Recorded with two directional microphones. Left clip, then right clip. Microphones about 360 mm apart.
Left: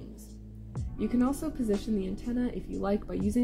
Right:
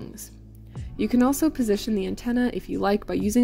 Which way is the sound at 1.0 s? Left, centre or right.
Right.